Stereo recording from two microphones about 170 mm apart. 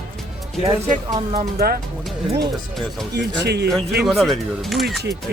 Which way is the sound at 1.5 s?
60° right (ahead or behind).